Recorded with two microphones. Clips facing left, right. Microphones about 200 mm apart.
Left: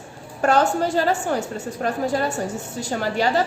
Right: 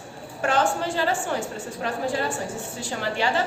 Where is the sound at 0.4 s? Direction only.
40° left (ahead or behind).